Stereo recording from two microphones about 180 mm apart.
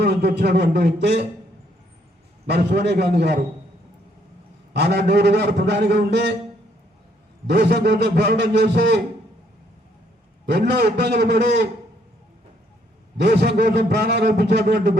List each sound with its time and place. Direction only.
0.0 s a man's voice: 65° right (ahead or behind)
2.5 s a man's voice: 65° right (ahead or behind)
4.7 s a man's voice: 70° right (ahead or behind)
7.4 s a man's voice: 70° right (ahead or behind)
10.4 s a man's voice: 65° right (ahead or behind)
13.2 s a man's voice: 65° right (ahead or behind)